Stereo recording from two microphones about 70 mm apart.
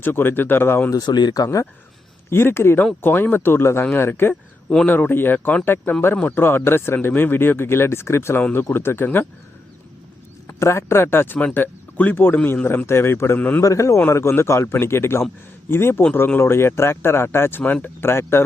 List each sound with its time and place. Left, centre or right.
0.0 s speech: left
0.9 s speech: left
2.3 s speech: left
10.4 s speech: left
11.3 s speech: centre; by 13.4 s left
13.6 s a man's voice: left